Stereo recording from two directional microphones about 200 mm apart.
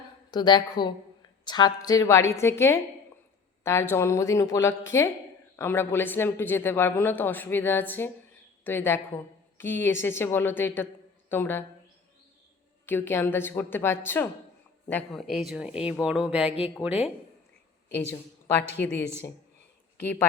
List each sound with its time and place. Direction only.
0.3 s a woman's voice: 20° left (ahead or behind)
12.8 s speech: 10° left (ahead or behind)
15.4 s speech: 5° right (ahead or behind)
16.5 s a woman's voice: 30° left (ahead or behind)
18.8 s speech: 10° left (ahead or behind)
20.0 s speech: 10° left (ahead or behind)